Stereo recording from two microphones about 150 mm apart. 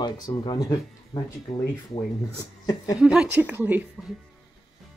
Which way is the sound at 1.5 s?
50° left (ahead or behind).